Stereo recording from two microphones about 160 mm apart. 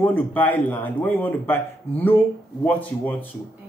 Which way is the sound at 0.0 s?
10° left (ahead or behind).